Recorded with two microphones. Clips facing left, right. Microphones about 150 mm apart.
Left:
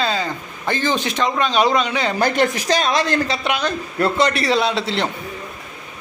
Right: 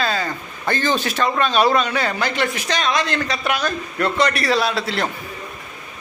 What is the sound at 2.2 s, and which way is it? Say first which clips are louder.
Speech: left 4 dB; 40° left (ahead or behind).